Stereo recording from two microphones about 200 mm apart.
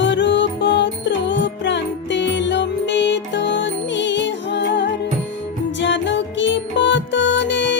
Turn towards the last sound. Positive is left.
turn(degrees=65)  # may be behind; listen again after turning